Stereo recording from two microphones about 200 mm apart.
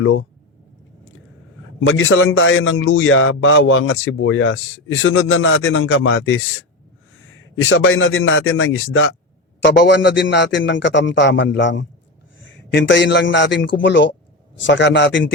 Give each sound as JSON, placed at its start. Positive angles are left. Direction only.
{"t": 0.0, "sound": "speech", "side_deg": 75}
{"t": 1.8, "sound": "a man's voice", "side_deg": 80}
{"t": 9.6, "sound": "a man's voice", "side_deg": 60}